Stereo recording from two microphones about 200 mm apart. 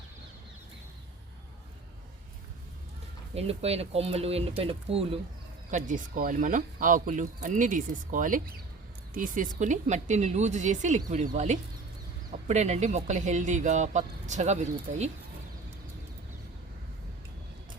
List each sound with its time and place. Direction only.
3.3 s speech: 30° right (ahead or behind)
5.7 s speech: 40° right (ahead or behind)
12.3 s speech: 35° right (ahead or behind)